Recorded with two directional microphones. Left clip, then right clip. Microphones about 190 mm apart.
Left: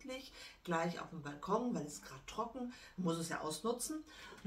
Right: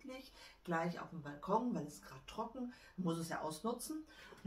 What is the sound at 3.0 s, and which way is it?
Speech, 15° left (ahead or behind).